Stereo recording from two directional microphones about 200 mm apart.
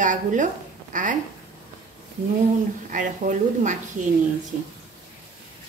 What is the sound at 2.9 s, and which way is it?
Speech, 40° right (ahead or behind).